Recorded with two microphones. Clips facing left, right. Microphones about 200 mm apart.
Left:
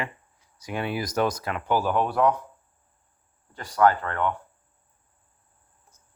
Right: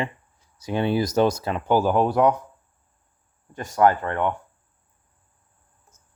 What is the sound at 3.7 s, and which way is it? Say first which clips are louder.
Speech: right 2 dB; 15° right (ahead or behind).